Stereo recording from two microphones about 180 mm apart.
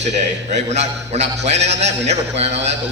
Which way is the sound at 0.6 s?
40° right (ahead or behind).